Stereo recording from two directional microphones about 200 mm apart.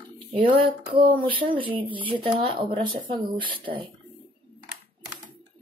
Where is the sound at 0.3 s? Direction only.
25° right (ahead or behind).